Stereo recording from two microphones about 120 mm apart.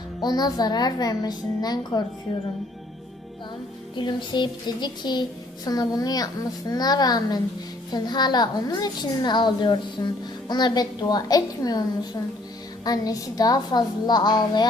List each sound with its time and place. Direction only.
0.2 s a woman's voice: 35° left (ahead or behind)
3.9 s a woman's voice: 40° left (ahead or behind)